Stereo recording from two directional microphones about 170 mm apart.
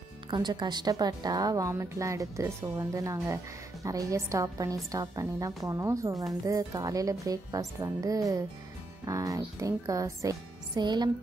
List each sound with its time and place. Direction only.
0.3 s a woman's voice: 25° right (ahead or behind)